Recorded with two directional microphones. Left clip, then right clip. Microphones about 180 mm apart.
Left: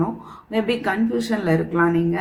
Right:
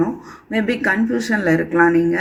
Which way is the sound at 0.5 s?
25° right (ahead or behind).